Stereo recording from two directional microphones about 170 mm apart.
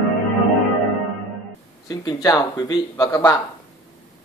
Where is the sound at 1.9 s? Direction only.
25° left (ahead or behind).